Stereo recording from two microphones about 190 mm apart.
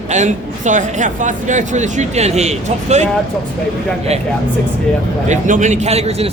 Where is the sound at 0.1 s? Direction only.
40° right (ahead or behind).